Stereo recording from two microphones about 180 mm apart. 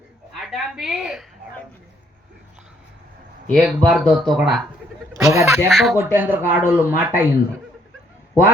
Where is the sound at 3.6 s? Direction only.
10° right (ahead or behind).